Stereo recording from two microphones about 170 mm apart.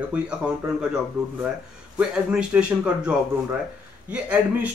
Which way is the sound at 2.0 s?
5° right (ahead or behind).